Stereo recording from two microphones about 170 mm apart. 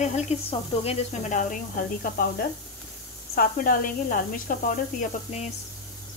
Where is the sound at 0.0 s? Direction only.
40° left (ahead or behind).